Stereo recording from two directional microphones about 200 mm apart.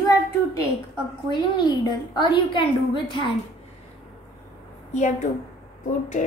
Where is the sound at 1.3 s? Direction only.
20° left (ahead or behind).